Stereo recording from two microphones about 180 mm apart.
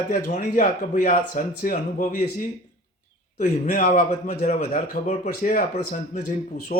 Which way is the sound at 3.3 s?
45° left (ahead or behind).